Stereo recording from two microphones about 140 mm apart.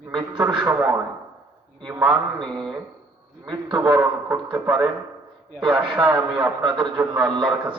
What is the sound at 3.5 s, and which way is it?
A man's voice, 30° right (ahead or behind).